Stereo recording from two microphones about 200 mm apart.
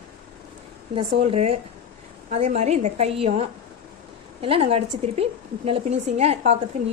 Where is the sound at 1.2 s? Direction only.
30° right (ahead or behind).